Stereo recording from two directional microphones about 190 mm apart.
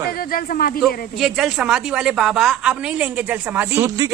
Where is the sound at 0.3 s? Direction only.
50° left (ahead or behind).